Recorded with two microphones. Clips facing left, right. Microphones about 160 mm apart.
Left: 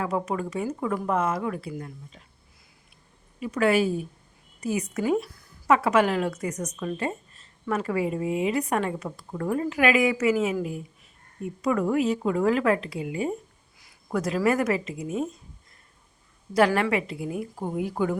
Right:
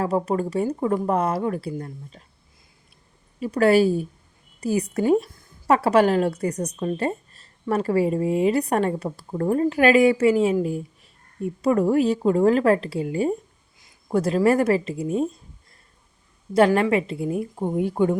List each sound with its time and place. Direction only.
0.0 s a woman's voice: 35° right (ahead or behind)
3.4 s a woman's voice: 35° right (ahead or behind)
16.6 s a woman's voice: 25° right (ahead or behind)